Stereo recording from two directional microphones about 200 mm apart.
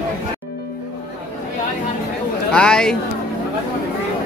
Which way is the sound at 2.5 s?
5° left (ahead or behind).